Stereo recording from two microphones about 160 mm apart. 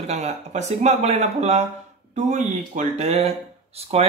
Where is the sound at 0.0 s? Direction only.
45° right (ahead or behind).